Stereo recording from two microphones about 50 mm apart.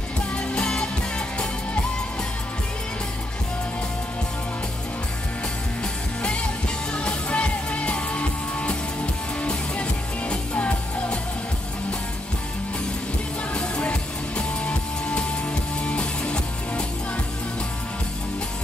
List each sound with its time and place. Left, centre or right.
0.6 s music: centre
6.9 s music: left
13.6 s music: left